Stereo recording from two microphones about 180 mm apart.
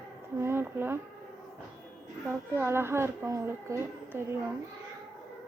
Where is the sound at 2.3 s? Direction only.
15° right (ahead or behind).